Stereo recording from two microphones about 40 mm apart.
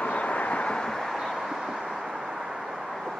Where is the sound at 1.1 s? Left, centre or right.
Centre.